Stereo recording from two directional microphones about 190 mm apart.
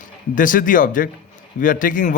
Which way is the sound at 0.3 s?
45° left (ahead or behind).